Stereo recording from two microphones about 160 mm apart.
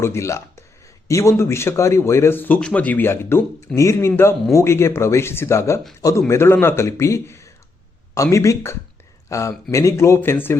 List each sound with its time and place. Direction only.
0.0 s a man's voice: 15° left (ahead or behind)